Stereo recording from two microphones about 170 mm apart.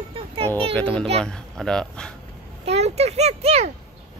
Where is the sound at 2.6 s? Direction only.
40° right (ahead or behind).